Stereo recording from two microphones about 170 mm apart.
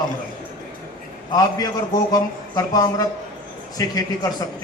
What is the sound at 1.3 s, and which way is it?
A man's voice, 20° left (ahead or behind).